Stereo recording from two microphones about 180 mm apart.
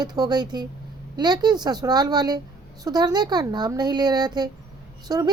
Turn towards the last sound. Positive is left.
turn(degrees=-20)  # may be behind; listen again after turning